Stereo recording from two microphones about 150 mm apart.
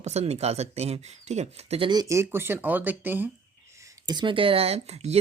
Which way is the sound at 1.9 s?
25° right (ahead or behind).